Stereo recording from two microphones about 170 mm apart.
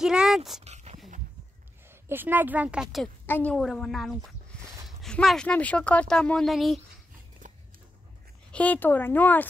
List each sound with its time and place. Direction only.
0.0 s speech: 5° right (ahead or behind)
0.7 s dog: 40° right (ahead or behind)
2.0 s speech: 10° right (ahead or behind)
3.3 s speech: 10° left (ahead or behind)
8.5 s speech: 10° left (ahead or behind)